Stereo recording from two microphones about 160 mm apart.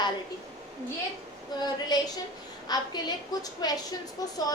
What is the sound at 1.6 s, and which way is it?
A woman's voice, 25° left (ahead or behind).